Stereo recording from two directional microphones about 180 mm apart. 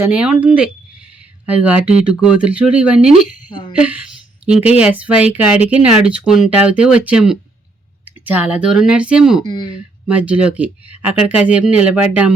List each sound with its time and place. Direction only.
0.0 s speech: 5° right (ahead or behind)
9.5 s speech: 25° left (ahead or behind)
10.1 s speech: 5° right (ahead or behind)